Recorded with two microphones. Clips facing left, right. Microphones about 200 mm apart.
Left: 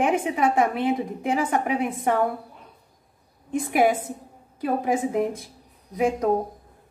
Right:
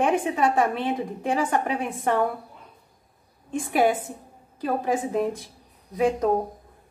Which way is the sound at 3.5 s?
10° left (ahead or behind).